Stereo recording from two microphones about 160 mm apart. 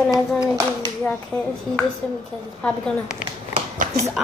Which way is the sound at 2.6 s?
5° left (ahead or behind).